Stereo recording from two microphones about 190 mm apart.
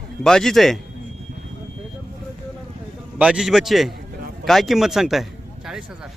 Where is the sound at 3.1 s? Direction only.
5° right (ahead or behind).